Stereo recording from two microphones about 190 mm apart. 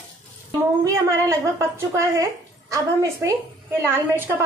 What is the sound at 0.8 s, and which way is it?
Speech, 15° right (ahead or behind).